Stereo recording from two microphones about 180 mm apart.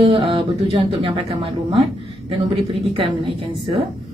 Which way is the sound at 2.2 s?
30° right (ahead or behind).